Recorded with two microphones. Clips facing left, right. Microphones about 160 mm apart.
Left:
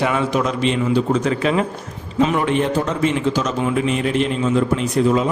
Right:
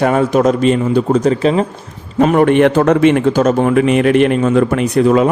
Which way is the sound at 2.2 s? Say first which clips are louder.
Right 8 dB; 50° right (ahead or behind).